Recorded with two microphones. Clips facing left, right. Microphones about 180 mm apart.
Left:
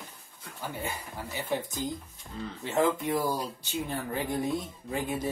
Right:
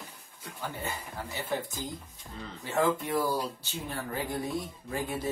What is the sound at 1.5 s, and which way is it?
Speech, 20° left (ahead or behind).